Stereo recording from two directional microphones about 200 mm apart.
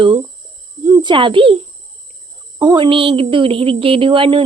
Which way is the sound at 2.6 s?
20° right (ahead or behind).